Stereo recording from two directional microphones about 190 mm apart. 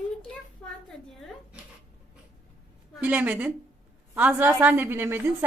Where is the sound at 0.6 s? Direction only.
5° left (ahead or behind).